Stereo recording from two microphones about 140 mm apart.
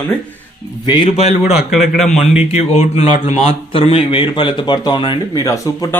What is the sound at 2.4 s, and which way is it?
A man's voice, 45° left (ahead or behind).